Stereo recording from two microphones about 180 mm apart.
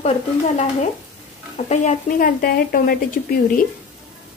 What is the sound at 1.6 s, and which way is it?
Speech, 45° left (ahead or behind).